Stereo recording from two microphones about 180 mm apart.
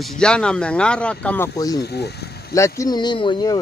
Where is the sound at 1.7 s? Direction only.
65° left (ahead or behind).